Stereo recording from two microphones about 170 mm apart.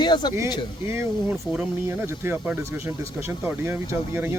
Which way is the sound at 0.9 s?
15° right (ahead or behind).